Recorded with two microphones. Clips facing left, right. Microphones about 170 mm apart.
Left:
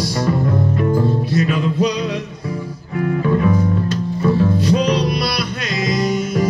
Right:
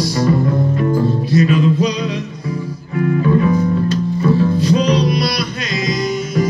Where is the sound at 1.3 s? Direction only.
55° left (ahead or behind).